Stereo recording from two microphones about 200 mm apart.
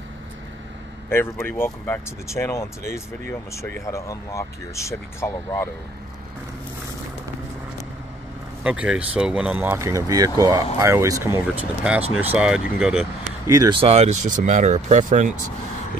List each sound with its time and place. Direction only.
1.0 s speech: 10° left (ahead or behind)
8.6 s speech: 5° right (ahead or behind)
13.5 s speech: 20° right (ahead or behind); by 15.3 s 40° right (ahead or behind)